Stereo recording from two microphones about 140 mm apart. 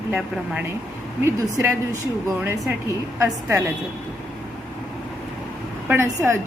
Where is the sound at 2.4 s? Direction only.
10° right (ahead or behind).